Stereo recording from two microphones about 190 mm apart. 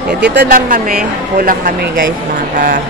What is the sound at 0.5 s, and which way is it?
A woman's voice, 45° right (ahead or behind).